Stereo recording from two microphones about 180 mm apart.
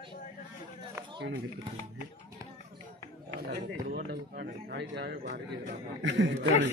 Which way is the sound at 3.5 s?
60° right (ahead or behind).